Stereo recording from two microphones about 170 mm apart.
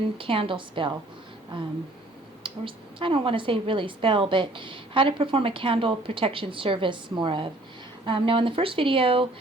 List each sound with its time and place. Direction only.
0.2 s speech: 30° right (ahead or behind)